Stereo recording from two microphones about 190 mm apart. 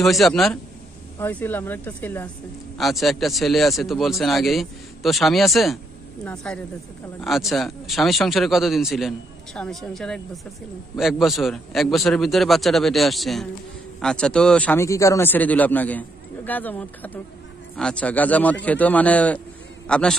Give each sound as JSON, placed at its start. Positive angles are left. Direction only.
{"t": 0.0, "sound": "speech", "side_deg": 0}